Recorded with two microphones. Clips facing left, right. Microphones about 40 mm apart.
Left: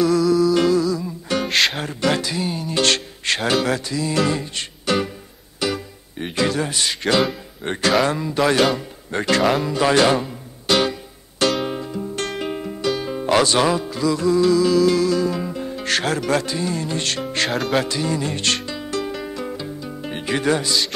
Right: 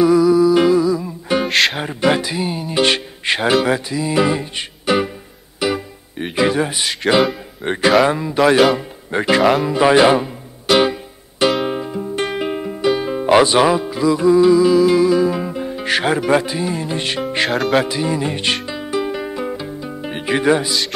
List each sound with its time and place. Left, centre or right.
0.0 s music: centre
1.5 s music: centre
1.8 s speech: centre
5.6 s music: centre
7.6 s speech: centre
9.7 s music: centre
17.5 s speech: centre
17.8 s speech: centre
18.7 s music: centre